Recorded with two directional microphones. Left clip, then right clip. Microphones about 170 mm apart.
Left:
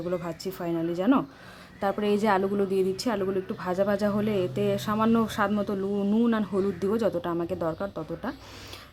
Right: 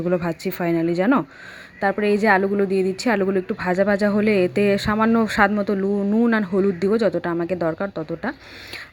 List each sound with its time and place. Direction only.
0.0 s a woman's voice: 30° right (ahead or behind)
1.8 s a woman's voice: 10° right (ahead or behind)